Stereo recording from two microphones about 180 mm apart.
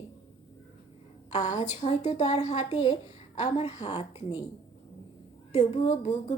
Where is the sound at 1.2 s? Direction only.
40° left (ahead or behind).